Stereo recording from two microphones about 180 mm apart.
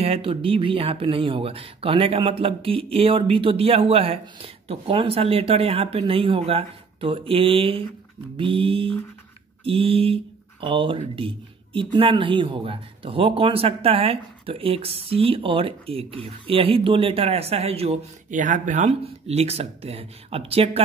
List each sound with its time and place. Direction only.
0.0 s speech: 30° right (ahead or behind)
8.4 s mantra: 30° right (ahead or behind)
9.7 s speech: 30° right (ahead or behind)